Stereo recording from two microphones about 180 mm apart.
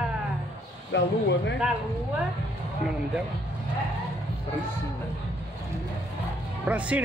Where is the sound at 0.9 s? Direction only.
80° left.